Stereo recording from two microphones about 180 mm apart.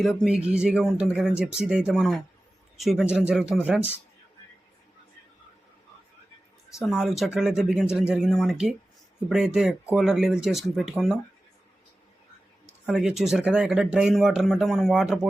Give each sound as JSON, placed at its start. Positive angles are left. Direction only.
{"t": 0.0, "sound": "speech", "side_deg": 0}
{"t": 6.8, "sound": "speech", "side_deg": 0}
{"t": 12.8, "sound": "speech", "side_deg": -5}